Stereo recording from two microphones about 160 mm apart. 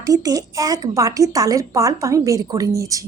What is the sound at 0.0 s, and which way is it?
A woman's voice, 20° right (ahead or behind).